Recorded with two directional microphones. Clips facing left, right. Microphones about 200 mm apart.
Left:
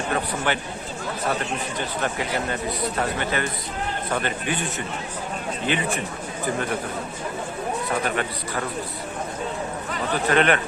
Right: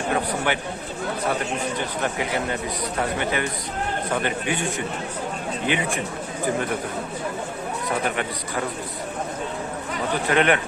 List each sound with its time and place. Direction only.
0.1 s a man's voice: 15° right (ahead or behind)
3.2 s a man's voice: 15° right (ahead or behind)
5.6 s a man's voice: 15° right (ahead or behind)
10.2 s a man's voice: 15° right (ahead or behind)